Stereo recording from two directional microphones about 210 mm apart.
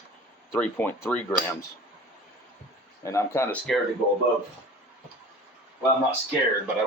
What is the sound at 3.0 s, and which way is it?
Speech, 15° left (ahead or behind).